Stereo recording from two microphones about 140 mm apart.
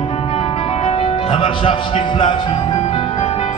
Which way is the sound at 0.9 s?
45° left (ahead or behind).